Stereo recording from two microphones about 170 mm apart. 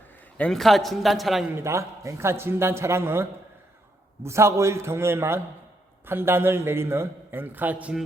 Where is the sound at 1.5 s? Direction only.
15° right (ahead or behind).